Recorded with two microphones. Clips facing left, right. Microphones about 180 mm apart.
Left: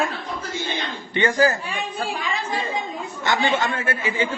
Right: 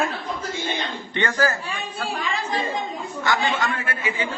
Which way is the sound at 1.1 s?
10° left (ahead or behind).